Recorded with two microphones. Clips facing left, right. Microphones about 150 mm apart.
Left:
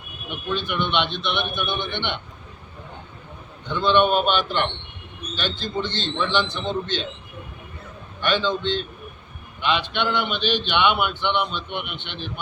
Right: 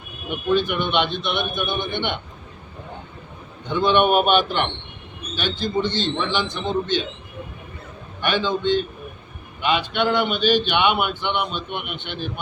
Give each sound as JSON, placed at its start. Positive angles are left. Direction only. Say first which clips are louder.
{"t": 0.3, "sound": "a man's voice", "louder": "right 7 dB", "side_deg": -45}
{"t": 1.3, "sound": "a man's voice", "louder": "right 2 dB", "side_deg": -10}
{"t": 3.7, "sound": "a man's voice", "louder": "right 1 dB", "side_deg": -15}
{"t": 8.2, "sound": "a man's voice", "louder": "right 1 dB", "side_deg": -15}
{"t": 10.2, "sound": "a man's voice", "louder": "right 5 dB", "side_deg": -45}
{"t": 11.2, "sound": "a man's voice", "louder": "left 1 dB", "side_deg": -10}
{"t": 11.5, "sound": "a man's voice", "louder": "right 1 dB", "side_deg": -50}